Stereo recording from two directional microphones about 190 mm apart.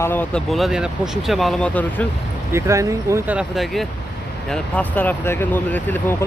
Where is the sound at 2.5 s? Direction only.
15° right (ahead or behind).